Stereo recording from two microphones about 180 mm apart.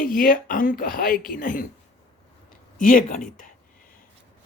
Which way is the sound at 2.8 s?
50° left (ahead or behind).